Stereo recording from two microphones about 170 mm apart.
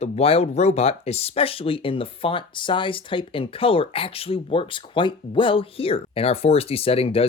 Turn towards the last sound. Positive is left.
turn(degrees=35)  # may be behind; listen again after turning